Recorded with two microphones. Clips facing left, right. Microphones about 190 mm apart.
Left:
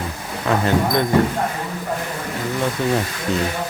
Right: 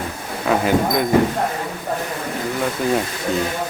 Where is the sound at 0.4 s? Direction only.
5° right (ahead or behind).